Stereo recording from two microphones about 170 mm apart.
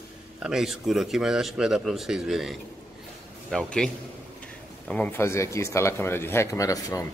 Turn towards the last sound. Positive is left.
turn(degrees=20)  # may be behind; listen again after turning